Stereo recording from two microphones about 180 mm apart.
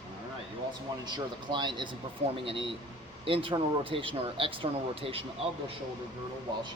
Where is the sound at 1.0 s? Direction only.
25° right (ahead or behind).